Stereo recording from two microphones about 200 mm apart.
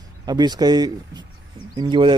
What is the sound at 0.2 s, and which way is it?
Speech, 20° right (ahead or behind).